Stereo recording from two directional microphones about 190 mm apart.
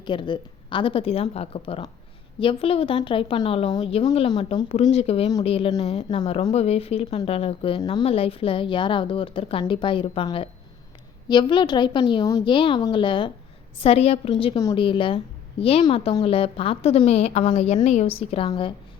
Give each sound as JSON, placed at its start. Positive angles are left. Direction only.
{"t": 0.0, "sound": "a woman's voice", "side_deg": 25}